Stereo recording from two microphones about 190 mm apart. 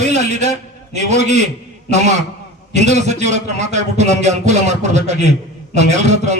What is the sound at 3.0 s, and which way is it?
A man's voice, 35° right (ahead or behind).